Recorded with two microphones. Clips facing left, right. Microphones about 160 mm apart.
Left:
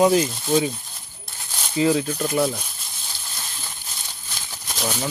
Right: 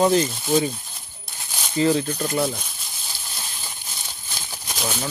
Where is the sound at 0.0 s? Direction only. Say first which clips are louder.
Left 1 dB; 5° left (ahead or behind).